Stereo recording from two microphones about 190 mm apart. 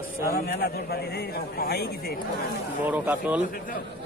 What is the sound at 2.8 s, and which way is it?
Speech, 10° right (ahead or behind).